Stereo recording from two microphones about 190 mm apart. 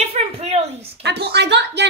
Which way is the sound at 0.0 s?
35° right (ahead or behind).